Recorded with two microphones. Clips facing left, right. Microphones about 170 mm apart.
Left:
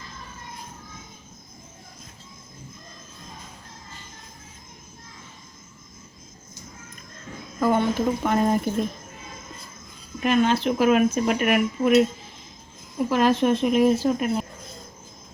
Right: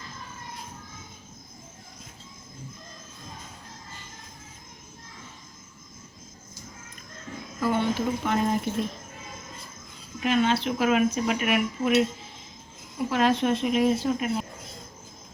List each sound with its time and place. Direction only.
7.6 s speech: 50° left (ahead or behind)
10.2 s speech: 50° left (ahead or behind)
13.1 s speech: 50° left (ahead or behind)